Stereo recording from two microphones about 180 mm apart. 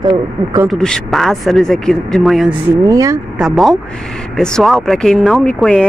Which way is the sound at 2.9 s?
20° right (ahead or behind).